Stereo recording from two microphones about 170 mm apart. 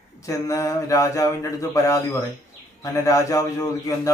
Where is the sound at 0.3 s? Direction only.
20° left (ahead or behind).